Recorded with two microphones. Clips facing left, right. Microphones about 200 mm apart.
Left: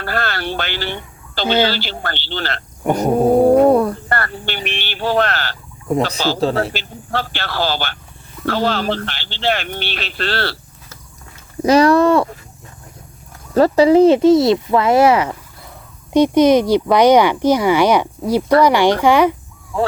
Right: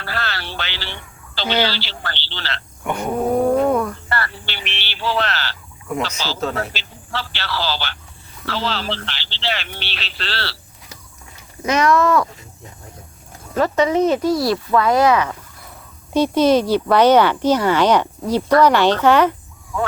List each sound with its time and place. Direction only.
0.0 s a sound: 50° left (ahead or behind)
1.6 s speech: 50° left (ahead or behind)
4.1 s speech: 50° left (ahead or behind)
6.4 s speech: 30° left (ahead or behind)
6.7 s speech: 50° left (ahead or behind)
11.6 s speech: 35° left (ahead or behind)
13.5 s speech: 35° left (ahead or behind)
16.1 s speech: 15° left (ahead or behind)
19.7 s speech: 30° left (ahead or behind)